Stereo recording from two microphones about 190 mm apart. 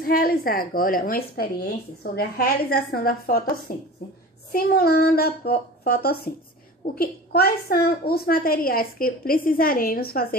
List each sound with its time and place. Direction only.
0.0 s a woman's voice: 50° left (ahead or behind)